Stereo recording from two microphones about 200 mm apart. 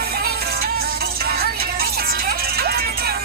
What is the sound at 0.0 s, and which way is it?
Music, 50° right (ahead or behind).